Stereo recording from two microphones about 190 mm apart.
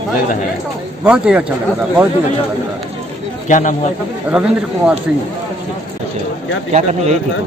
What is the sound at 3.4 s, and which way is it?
Speech, 40° left (ahead or behind).